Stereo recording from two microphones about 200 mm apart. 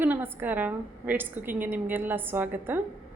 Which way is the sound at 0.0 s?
10° right (ahead or behind).